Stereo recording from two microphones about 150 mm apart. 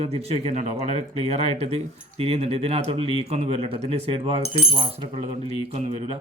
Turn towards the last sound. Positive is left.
turn(degrees=-40)  # may be behind; listen again after turning